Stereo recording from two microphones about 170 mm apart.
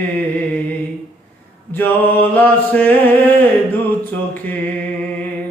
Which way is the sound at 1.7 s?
10° left (ahead or behind).